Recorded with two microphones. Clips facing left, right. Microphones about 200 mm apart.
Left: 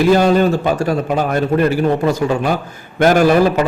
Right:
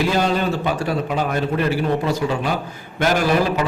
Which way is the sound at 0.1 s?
45° left (ahead or behind).